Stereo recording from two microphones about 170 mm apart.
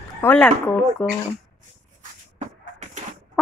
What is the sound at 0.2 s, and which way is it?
Speech, 10° left (ahead or behind).